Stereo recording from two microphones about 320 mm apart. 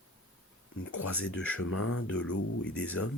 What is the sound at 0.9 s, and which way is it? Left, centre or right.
Speech, left.